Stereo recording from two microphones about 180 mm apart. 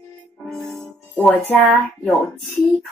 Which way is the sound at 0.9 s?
Centre (ahead or behind).